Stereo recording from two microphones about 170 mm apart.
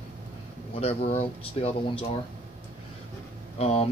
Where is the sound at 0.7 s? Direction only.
40° left (ahead or behind).